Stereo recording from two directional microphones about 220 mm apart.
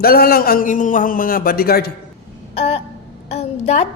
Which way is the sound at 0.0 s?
45° left (ahead or behind).